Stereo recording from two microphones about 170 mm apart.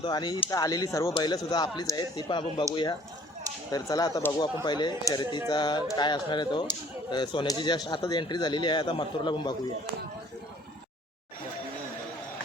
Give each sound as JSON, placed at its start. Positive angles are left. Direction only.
{"t": 0.0, "sound": "speech", "side_deg": 25}
{"t": 3.7, "sound": "speech", "side_deg": 20}